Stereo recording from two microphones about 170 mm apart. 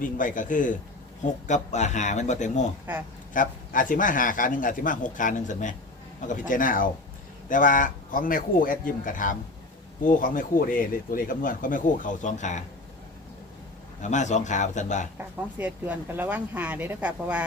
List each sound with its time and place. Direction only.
0.0 s speech: 50° left (ahead or behind)
14.0 s speech: 45° left (ahead or behind)
15.5 s speech: 10° right (ahead or behind)